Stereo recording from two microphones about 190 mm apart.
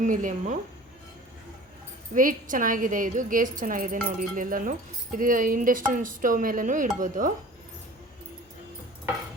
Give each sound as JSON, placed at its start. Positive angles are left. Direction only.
{"t": 0.0, "sound": "speech", "side_deg": -45}
{"t": 2.1, "sound": "speech", "side_deg": -45}